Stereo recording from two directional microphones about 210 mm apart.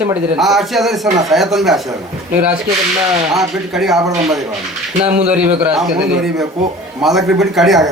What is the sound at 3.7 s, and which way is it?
A man's voice, centre (ahead or behind).